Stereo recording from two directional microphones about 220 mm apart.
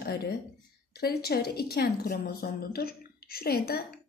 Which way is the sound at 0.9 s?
45° left (ahead or behind).